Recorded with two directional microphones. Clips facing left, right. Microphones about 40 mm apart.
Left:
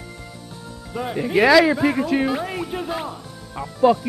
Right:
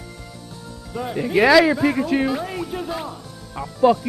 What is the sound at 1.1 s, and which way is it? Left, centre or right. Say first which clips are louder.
Speech: even; centre.